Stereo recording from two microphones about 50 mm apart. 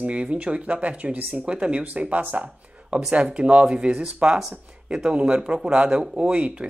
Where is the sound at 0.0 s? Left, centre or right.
Right.